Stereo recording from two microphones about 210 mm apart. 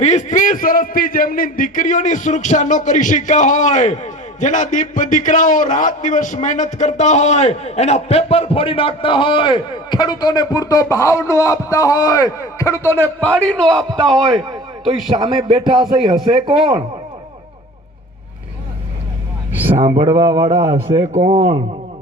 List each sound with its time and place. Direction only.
0.0 s a man's voice: 35° left (ahead or behind); by 14.4 s centre (ahead or behind)
15.1 s speech: 20° right (ahead or behind)
19.5 s a man's voice: 10° right (ahead or behind)
21.1 s speech: 30° right (ahead or behind)